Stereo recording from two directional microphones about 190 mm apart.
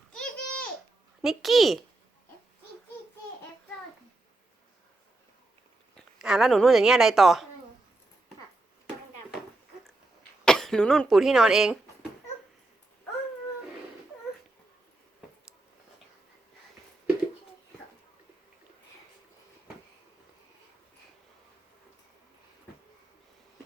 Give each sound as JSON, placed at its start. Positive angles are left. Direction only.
{"t": 0.1, "sound": "a sound", "side_deg": 5}
{"t": 1.2, "sound": "a woman's voice", "side_deg": 0}
{"t": 6.0, "sound": "speech", "side_deg": -5}
{"t": 10.4, "sound": "speech", "side_deg": 5}